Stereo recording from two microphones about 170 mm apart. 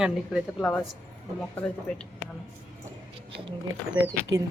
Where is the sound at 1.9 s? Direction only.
5° left (ahead or behind).